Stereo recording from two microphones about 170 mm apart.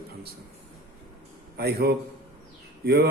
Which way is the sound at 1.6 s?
70° right (ahead or behind).